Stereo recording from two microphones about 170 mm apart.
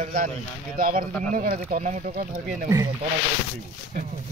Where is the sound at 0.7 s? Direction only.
55° right (ahead or behind).